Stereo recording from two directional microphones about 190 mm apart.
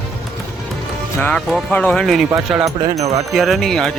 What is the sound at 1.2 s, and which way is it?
Speech, 5° left (ahead or behind).